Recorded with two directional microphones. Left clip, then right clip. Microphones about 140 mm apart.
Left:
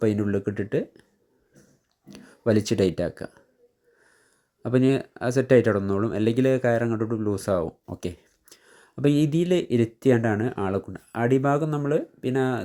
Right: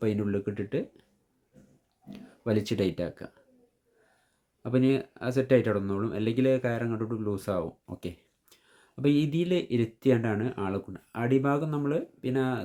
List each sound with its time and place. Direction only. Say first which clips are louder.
0.0 s speech: left 5 dB; 35° left (ahead or behind)
2.0 s speech: left 7 dB; 40° left (ahead or behind)
4.6 s speech: left 4 dB; 40° left (ahead or behind)